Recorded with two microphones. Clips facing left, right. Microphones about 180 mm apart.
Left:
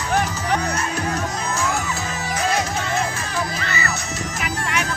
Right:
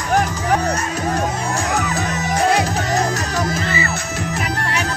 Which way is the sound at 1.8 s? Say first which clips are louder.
Right 5 dB; 65° right (ahead or behind).